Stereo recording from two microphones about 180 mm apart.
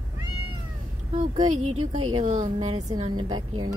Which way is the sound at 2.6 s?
20° right (ahead or behind).